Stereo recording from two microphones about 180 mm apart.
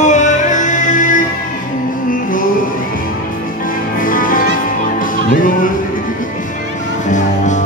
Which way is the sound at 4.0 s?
50° left (ahead or behind).